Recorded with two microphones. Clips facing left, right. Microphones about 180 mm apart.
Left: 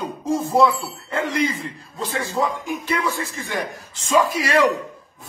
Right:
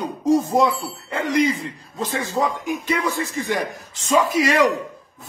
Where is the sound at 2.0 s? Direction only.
20° right (ahead or behind).